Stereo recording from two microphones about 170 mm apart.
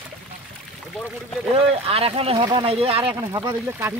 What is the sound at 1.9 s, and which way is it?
Speech, 35° right (ahead or behind).